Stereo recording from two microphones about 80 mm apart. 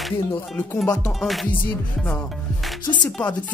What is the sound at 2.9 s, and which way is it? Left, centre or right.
Music, centre.